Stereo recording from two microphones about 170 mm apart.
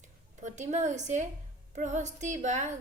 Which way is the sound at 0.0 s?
45° right (ahead or behind).